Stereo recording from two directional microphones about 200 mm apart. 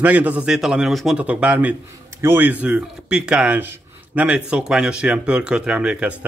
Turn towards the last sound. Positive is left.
turn(degrees=-5)  # may be behind; listen again after turning